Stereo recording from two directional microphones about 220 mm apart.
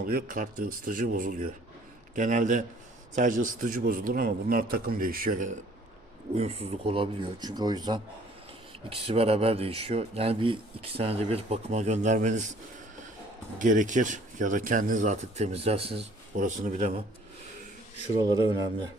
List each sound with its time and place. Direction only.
0.0 s speech: 40° right (ahead or behind)
13.6 s speech: 35° right (ahead or behind)
18.2 s speech: 15° right (ahead or behind)